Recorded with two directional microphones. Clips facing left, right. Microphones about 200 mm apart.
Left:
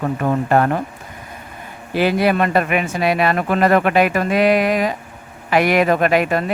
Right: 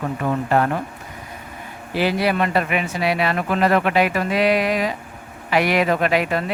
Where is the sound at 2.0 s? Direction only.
50° left (ahead or behind).